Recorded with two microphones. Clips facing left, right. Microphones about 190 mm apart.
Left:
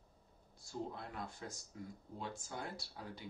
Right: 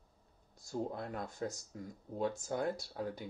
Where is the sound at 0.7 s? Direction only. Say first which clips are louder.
Right 6 dB; 45° right (ahead or behind).